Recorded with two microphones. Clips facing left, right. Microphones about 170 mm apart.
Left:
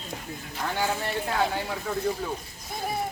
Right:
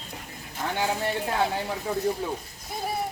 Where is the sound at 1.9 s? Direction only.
15° right (ahead or behind).